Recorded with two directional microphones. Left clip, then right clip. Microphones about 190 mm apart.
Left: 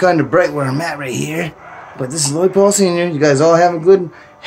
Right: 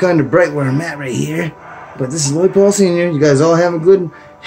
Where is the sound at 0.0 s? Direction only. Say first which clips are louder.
Even; 10° right (ahead or behind).